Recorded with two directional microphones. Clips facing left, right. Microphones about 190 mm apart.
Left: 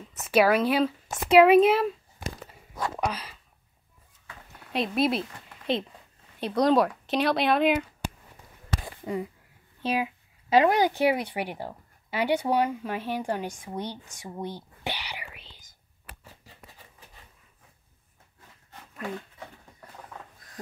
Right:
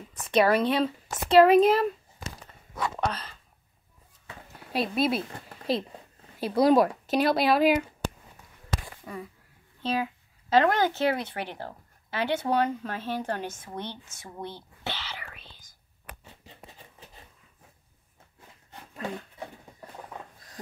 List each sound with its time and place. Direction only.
0.1 s a woman's voice: 5° left (ahead or behind)
3.0 s speech: 10° left (ahead or behind)
4.7 s a woman's voice: centre (ahead or behind)
6.4 s a woman's voice: 5° right (ahead or behind)
8.0 s a sound: 15° left (ahead or behind)
9.0 s speech: 20° left (ahead or behind)
9.8 s a sound: 15° left (ahead or behind)
10.5 s speech: 10° left (ahead or behind)